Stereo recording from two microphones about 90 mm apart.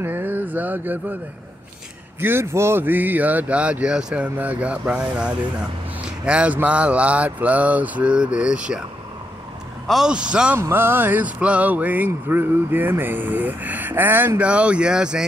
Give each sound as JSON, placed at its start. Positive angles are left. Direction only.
{"t": 0.0, "sound": "speech", "side_deg": -20}
{"t": 2.1, "sound": "speech", "side_deg": -25}
{"t": 9.8, "sound": "speech", "side_deg": -5}
{"t": 10.6, "sound": "speech", "side_deg": -25}